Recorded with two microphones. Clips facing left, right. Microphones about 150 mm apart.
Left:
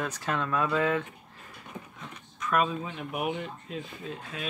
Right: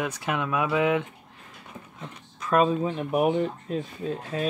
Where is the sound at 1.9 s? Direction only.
30° right (ahead or behind).